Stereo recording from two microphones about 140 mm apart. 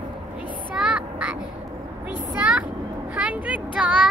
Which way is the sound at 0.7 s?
5° right (ahead or behind).